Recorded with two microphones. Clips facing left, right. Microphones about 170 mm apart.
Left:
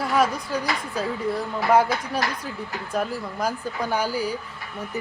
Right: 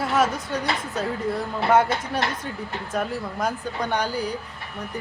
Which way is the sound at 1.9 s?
25° right (ahead or behind).